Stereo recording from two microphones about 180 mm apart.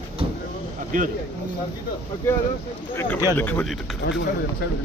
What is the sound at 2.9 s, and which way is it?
Speech, 15° left (ahead or behind).